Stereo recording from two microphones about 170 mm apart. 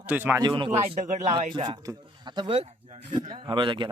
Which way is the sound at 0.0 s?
10° right (ahead or behind).